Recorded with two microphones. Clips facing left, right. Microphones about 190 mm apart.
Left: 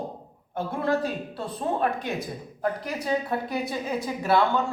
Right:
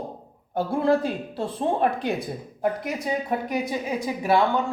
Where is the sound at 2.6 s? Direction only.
15° right (ahead or behind).